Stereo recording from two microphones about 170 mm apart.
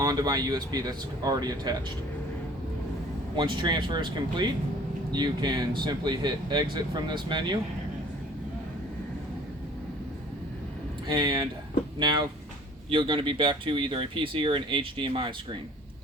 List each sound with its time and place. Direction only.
0.0 s speech: 20° right (ahead or behind)
3.3 s speech: 30° right (ahead or behind)
11.1 s speech: 25° right (ahead or behind)